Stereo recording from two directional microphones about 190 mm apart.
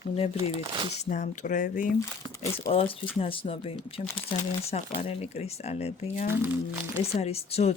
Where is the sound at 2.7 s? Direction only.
30° left (ahead or behind).